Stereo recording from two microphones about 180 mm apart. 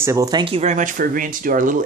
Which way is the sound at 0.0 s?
20° right (ahead or behind).